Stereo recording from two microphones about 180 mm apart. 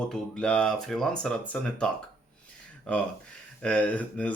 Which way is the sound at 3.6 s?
5° left (ahead or behind).